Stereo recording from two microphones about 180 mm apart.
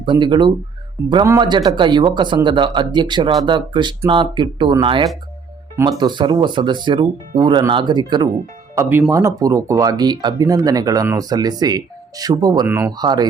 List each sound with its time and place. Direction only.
0.0 s speech: 25° right (ahead or behind)
8.7 s speech: 15° right (ahead or behind)
12.6 s speech: 10° right (ahead or behind)
13.0 s speech: 20° right (ahead or behind)